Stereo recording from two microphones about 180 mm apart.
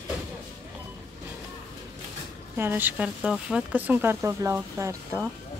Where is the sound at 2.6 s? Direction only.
10° right (ahead or behind).